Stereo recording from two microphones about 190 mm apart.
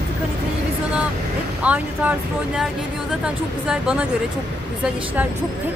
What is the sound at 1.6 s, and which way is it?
Speech, 10° right (ahead or behind).